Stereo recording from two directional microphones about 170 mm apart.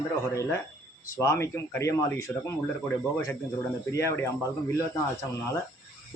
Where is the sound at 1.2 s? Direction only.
15° left (ahead or behind).